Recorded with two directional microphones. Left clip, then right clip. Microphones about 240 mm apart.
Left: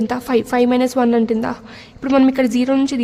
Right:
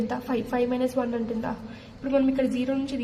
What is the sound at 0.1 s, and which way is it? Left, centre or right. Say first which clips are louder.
A woman's voice: left 11 dB; left.